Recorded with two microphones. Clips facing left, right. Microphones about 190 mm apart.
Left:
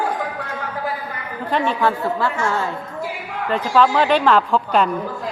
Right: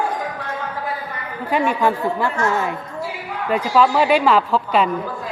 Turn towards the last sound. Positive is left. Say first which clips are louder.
# even
turn(degrees=-5)  # may be behind; listen again after turning